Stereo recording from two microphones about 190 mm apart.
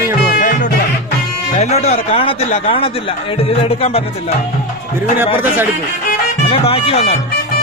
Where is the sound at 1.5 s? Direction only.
35° left (ahead or behind).